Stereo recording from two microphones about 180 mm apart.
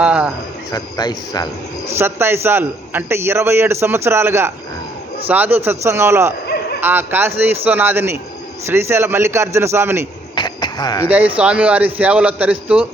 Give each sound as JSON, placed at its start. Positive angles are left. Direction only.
{"t": 0.0, "sound": "cricket", "side_deg": -5}
{"t": 0.7, "sound": "speech", "side_deg": 20}
{"t": 2.0, "sound": "a man's voice", "side_deg": -15}
{"t": 10.3, "sound": "a sound", "side_deg": 25}
{"t": 11.3, "sound": "a man's voice", "side_deg": -5}